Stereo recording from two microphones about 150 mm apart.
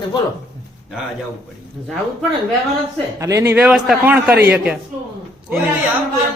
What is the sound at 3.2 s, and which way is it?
Speech, 20° right (ahead or behind).